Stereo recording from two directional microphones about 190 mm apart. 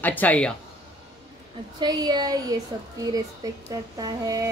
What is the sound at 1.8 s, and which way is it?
Speech, 20° right (ahead or behind).